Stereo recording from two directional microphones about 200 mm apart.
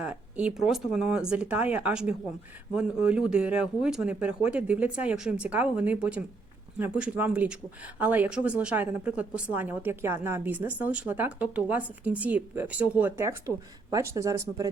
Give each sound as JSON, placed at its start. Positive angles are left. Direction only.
{"t": 0.0, "sound": "speech", "side_deg": -5}